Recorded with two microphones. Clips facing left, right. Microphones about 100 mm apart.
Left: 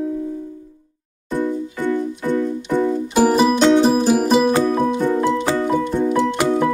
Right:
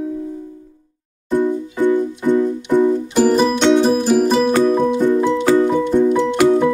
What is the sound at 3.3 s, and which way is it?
Music, 10° left (ahead or behind).